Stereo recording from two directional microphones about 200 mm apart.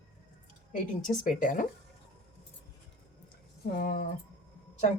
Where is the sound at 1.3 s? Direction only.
40° left (ahead or behind).